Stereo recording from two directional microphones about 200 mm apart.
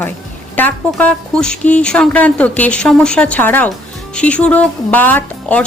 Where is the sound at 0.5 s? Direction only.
10° left (ahead or behind).